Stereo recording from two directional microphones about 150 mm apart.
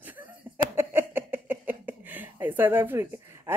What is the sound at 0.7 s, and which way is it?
Speech, 15° right (ahead or behind).